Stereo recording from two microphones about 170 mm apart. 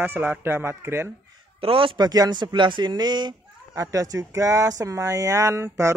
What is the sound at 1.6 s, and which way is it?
A man's voice, 30° right (ahead or behind).